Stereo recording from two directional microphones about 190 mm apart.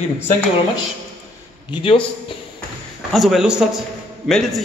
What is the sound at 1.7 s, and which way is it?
Speech, 25° left (ahead or behind).